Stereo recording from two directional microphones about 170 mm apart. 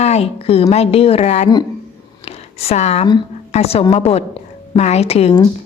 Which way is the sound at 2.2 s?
35° left (ahead or behind).